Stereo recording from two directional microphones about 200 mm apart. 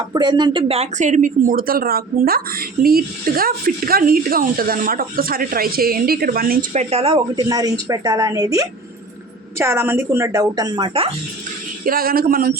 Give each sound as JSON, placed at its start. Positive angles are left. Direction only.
{"t": 0.1, "sound": "a woman's voice", "side_deg": -20}
{"t": 11.9, "sound": "speech", "side_deg": -45}